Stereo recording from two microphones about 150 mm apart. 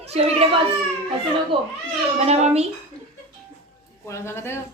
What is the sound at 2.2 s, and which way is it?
Speech, 45° right (ahead or behind).